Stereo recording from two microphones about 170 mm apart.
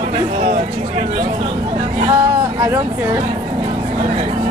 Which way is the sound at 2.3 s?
15° right (ahead or behind).